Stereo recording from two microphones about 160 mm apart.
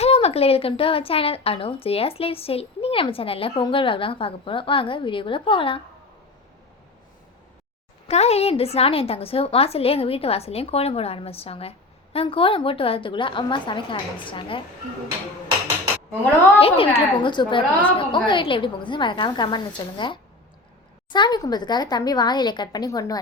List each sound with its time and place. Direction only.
0.0 s a woman's voice: 40° left (ahead or behind)
8.0 s a woman's voice: 40° left (ahead or behind)
16.6 s a woman's voice: 35° left (ahead or behind)